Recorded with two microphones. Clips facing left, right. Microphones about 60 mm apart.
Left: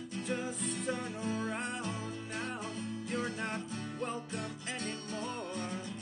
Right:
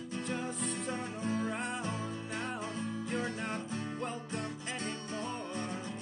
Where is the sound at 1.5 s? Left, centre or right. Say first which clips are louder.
Right 1 dB; centre.